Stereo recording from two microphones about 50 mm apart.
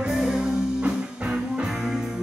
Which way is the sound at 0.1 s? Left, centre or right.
Centre.